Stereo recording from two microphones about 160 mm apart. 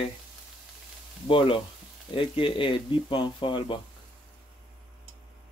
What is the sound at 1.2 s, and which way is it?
Speech, 35° left (ahead or behind).